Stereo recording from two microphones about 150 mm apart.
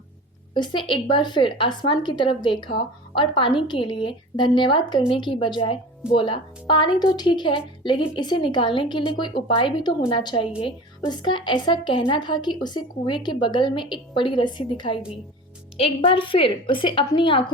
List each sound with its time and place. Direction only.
0.5 s a woman's voice: 30° left (ahead or behind)